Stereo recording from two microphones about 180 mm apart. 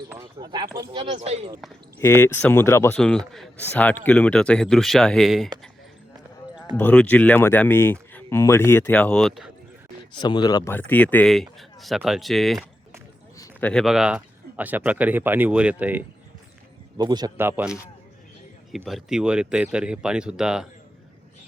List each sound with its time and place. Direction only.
0.3 s speech: 25° right (ahead or behind)
2.0 s speech: 15° left (ahead or behind)
6.7 s speech: 10° left (ahead or behind)
10.2 s speech: 25° left (ahead or behind)
10.7 s speech: 10° left (ahead or behind); by 16.0 s 10° right (ahead or behind)
17.0 s speech: 25° right (ahead or behind)
17.3 s speech: 10° right (ahead or behind)
18.9 s speech: centre (ahead or behind)